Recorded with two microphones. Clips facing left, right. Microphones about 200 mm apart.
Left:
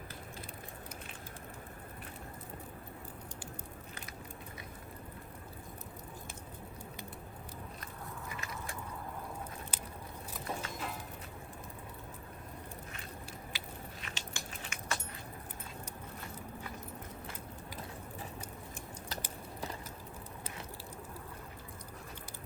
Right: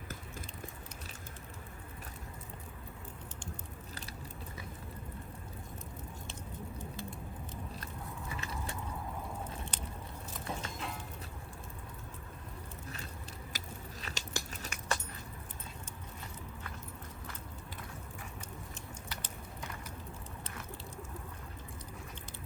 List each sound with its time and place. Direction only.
8.4 s mechanisms: 30° right (ahead or behind)
9.7 s biting: 5° left (ahead or behind)
10.3 s music: 5° left (ahead or behind)
13.5 s biting: 45° right (ahead or behind)
14.0 s a sound: 40° right (ahead or behind)